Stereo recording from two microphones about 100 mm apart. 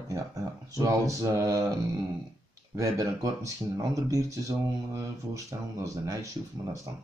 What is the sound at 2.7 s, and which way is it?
Speech, 35° right (ahead or behind).